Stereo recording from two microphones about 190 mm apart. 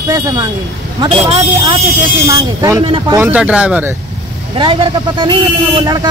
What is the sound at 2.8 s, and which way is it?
Speech, 30° right (ahead or behind).